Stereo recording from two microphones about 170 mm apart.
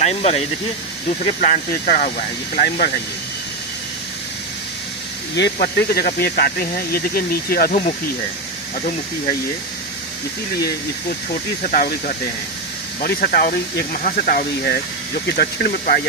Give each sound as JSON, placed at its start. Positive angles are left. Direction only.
{"t": 0.0, "sound": "speech", "side_deg": 40}
{"t": 1.2, "sound": "speech", "side_deg": 50}
{"t": 5.3, "sound": "speech", "side_deg": 90}
{"t": 11.6, "sound": "speech", "side_deg": 55}
{"t": 13.0, "sound": "speech", "side_deg": 60}